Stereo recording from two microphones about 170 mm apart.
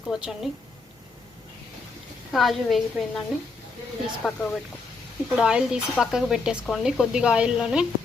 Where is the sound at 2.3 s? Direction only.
Centre (ahead or behind).